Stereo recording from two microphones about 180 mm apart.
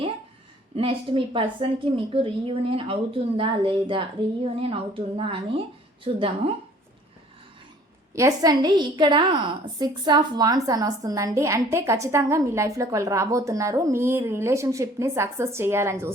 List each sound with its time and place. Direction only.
0.8 s a woman's voice: 30° right (ahead or behind)
8.1 s a woman's voice: 20° right (ahead or behind)